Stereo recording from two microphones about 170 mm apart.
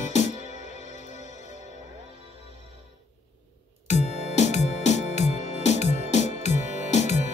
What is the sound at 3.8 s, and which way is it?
Music, 40° left (ahead or behind).